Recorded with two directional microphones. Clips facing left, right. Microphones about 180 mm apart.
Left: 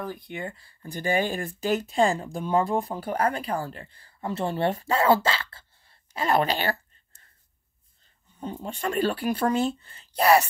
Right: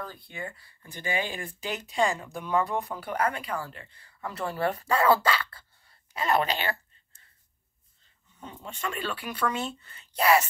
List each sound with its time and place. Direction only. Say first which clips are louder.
0.0 s speech: left 5 dB; 15° left (ahead or behind); by 7.2 s 35° left (ahead or behind)
8.4 s speech: left 6 dB; 35° left (ahead or behind)